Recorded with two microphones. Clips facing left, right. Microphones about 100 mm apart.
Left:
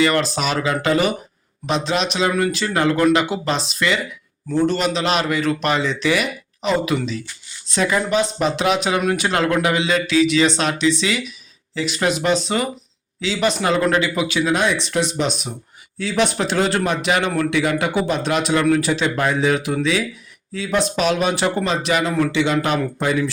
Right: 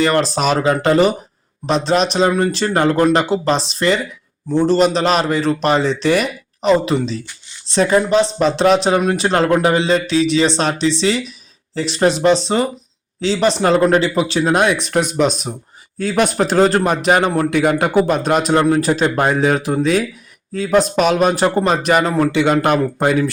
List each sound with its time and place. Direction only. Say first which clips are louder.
0.0 s a man's voice: right 3 dB; 35° right (ahead or behind); by 23.3 s 50° right (ahead or behind)